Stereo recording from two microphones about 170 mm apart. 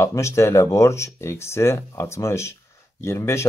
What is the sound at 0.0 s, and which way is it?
Speech, 15° left (ahead or behind).